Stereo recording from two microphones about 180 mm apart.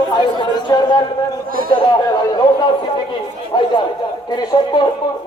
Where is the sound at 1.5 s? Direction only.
55° right (ahead or behind).